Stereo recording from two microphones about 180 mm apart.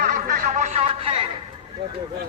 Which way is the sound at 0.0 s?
45° right (ahead or behind).